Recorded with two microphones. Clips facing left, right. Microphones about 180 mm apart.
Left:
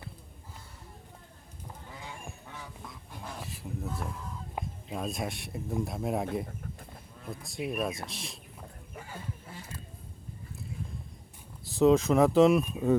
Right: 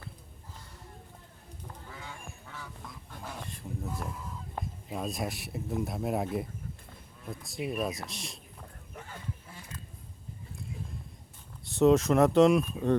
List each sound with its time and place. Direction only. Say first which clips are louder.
2.0 s goose: left 1 dB; 15° left (ahead or behind)
3.1 s dog: even; 5° left (ahead or behind)
3.9 s speech: even; centre (ahead or behind)
7.3 s speech: even; centre (ahead or behind)
11.6 s speech: even; centre (ahead or behind)